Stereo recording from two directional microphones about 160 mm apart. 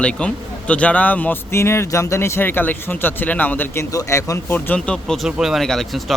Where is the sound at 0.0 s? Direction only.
5° left (ahead or behind).